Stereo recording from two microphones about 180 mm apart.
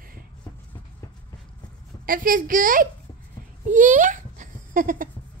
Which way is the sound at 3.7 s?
45° right (ahead or behind).